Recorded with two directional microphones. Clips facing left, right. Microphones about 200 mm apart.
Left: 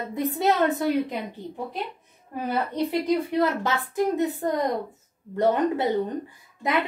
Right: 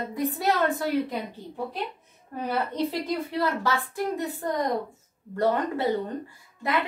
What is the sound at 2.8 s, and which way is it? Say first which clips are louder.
A woman's voice: left 5 dB; 15° left (ahead or behind).